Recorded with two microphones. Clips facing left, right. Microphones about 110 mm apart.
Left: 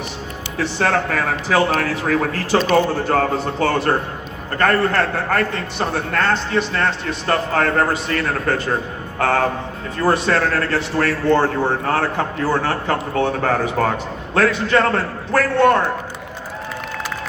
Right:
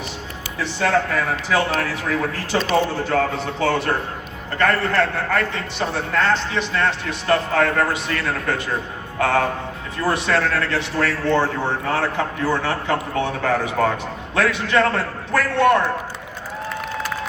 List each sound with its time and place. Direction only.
0.6 s a man's voice: 40° left (ahead or behind)